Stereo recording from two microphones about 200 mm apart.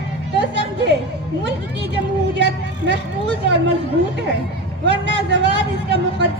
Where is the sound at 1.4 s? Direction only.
60° right (ahead or behind).